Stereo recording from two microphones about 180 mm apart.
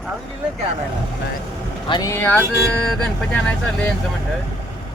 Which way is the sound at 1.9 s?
25° left (ahead or behind).